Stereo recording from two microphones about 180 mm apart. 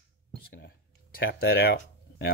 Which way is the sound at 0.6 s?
60° left (ahead or behind).